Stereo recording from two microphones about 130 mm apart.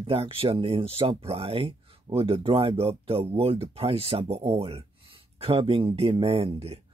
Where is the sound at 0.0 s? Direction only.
45° right (ahead or behind).